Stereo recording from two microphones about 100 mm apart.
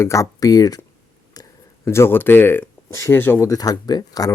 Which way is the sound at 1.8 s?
25° left (ahead or behind).